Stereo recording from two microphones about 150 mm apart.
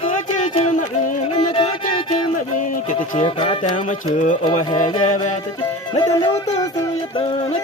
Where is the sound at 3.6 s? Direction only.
60° left (ahead or behind).